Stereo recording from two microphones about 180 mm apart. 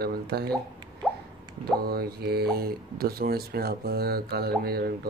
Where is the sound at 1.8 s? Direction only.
60° right (ahead or behind).